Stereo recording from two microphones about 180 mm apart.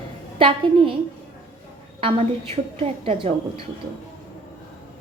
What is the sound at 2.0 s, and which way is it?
A woman's voice, 35° right (ahead or behind).